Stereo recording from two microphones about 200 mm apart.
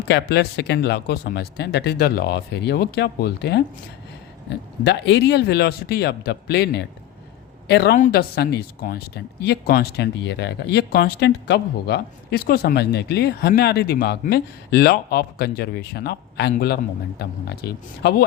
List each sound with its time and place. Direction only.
0.1 s speech: 55° left (ahead or behind)
7.9 s speech: 45° left (ahead or behind)